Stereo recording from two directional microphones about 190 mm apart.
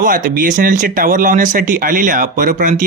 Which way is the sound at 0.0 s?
45° right (ahead or behind).